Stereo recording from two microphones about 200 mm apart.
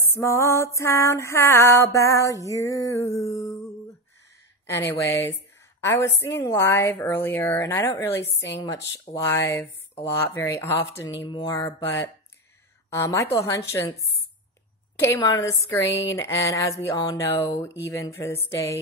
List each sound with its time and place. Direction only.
0.1 s a woman's voice: 15° left (ahead or behind)
4.8 s a woman's voice: 70° left (ahead or behind)
5.2 s a woman's voice: 10° left (ahead or behind)
15.0 s a woman's voice: 15° left (ahead or behind)